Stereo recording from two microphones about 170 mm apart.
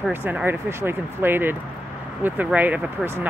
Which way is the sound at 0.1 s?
10° right (ahead or behind).